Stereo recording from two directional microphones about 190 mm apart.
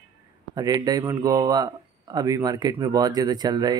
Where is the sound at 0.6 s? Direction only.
20° right (ahead or behind).